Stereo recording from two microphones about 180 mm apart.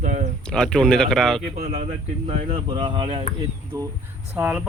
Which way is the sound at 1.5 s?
35° right (ahead or behind).